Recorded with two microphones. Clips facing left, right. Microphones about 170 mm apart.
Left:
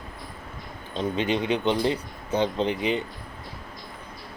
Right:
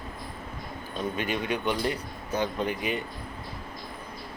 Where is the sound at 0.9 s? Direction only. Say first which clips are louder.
Left 5 dB; 25° left (ahead or behind).